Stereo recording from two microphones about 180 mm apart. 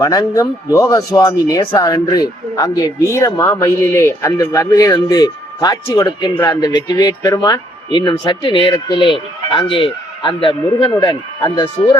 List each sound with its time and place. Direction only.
0.0 s speech: 20° left (ahead or behind)